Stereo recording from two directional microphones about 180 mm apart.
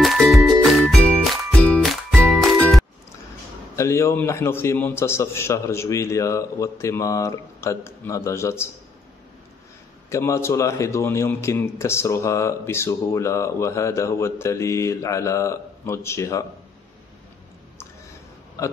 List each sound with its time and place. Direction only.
0.0 s music: centre (ahead or behind)
3.7 s a man's voice: 15° left (ahead or behind)
10.0 s a man's voice: 15° left (ahead or behind)